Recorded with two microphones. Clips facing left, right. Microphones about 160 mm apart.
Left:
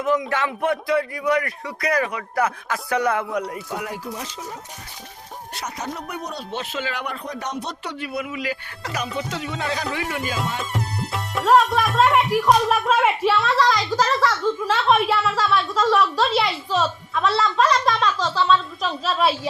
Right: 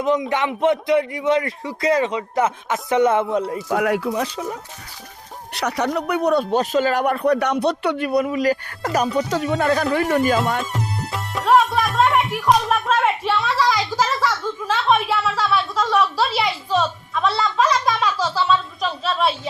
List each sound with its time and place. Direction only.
0.0 s a man's voice: 20° right (ahead or behind)
3.7 s speech: 65° right (ahead or behind)
5.5 s speech: 70° right (ahead or behind)
6.5 s speech: 40° right (ahead or behind)
10.6 s speech: centre (ahead or behind)